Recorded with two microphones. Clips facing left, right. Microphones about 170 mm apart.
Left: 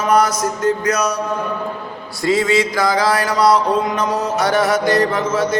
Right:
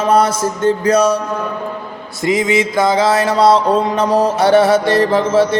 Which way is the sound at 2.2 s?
20° right (ahead or behind).